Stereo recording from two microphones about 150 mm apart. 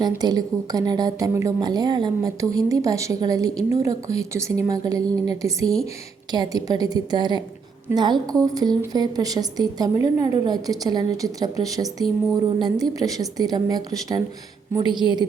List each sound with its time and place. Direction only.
0.2 s speech: 25° right (ahead or behind)